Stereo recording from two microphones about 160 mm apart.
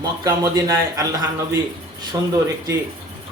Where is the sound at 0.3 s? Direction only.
20° right (ahead or behind).